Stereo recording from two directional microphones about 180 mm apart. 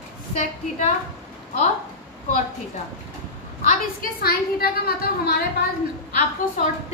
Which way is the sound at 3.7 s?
55° left (ahead or behind).